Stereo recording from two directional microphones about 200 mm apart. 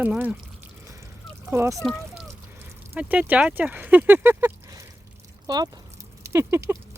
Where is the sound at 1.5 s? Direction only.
15° right (ahead or behind).